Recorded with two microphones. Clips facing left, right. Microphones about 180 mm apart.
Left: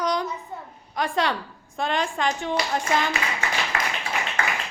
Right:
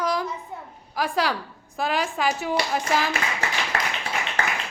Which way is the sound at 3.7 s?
35° right (ahead or behind).